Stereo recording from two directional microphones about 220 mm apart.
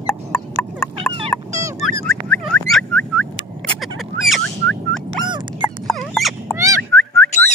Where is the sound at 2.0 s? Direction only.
5° left (ahead or behind).